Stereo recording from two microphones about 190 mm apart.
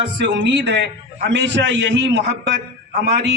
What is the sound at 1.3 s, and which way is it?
A man's voice, 70° right (ahead or behind).